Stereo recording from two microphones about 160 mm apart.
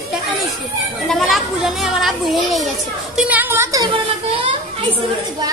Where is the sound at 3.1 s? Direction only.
10° right (ahead or behind).